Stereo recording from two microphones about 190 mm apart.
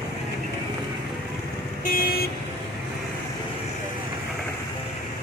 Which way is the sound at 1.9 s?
50° left (ahead or behind).